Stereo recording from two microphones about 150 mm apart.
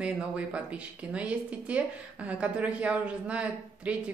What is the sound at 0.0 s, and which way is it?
A woman's voice, 5° right (ahead or behind).